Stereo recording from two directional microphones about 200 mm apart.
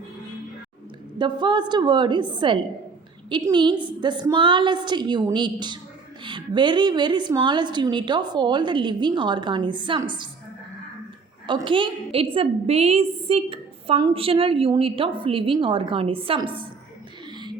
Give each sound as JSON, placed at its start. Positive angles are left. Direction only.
{"t": 1.2, "sound": "a woman's voice", "side_deg": -20}
{"t": 11.4, "sound": "a woman's voice", "side_deg": -25}